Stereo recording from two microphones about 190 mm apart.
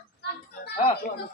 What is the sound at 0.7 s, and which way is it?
Speech, 30° left (ahead or behind).